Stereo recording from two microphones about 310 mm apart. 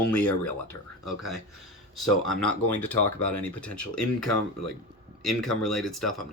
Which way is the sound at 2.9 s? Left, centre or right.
Left.